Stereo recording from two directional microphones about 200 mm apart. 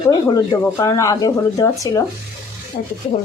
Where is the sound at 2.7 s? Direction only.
40° left (ahead or behind).